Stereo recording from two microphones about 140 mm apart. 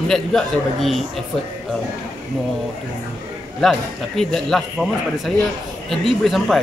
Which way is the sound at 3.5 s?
5° left (ahead or behind).